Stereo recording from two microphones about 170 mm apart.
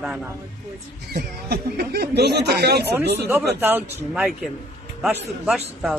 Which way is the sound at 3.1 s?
15° right (ahead or behind).